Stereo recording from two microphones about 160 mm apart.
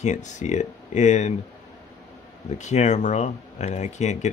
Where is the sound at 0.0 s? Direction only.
50° left (ahead or behind).